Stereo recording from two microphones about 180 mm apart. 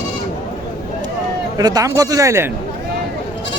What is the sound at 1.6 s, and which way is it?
Speech, 20° right (ahead or behind).